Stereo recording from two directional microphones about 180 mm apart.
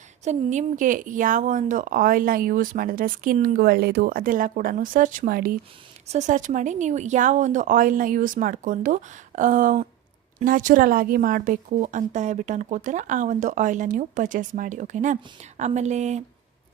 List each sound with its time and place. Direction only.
0.3 s a woman's voice: 45° right (ahead or behind)
6.1 s a woman's voice: 40° right (ahead or behind)